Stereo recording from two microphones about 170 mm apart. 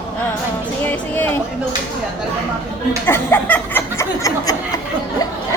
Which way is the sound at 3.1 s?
15° left (ahead or behind).